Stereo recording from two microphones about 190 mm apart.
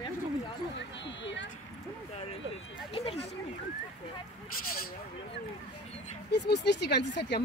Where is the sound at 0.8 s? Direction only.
70° left (ahead or behind).